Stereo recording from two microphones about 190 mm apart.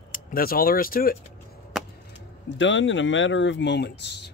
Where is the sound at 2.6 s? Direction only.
80° left.